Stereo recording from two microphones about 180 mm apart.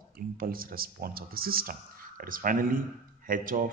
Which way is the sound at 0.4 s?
55° right (ahead or behind).